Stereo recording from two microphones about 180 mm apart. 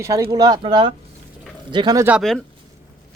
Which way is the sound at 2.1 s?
Centre (ahead or behind).